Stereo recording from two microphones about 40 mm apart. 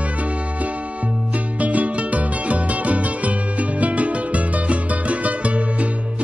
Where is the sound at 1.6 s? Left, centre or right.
Right.